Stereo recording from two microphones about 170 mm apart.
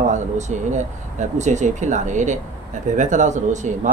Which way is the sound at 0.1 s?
45° right (ahead or behind).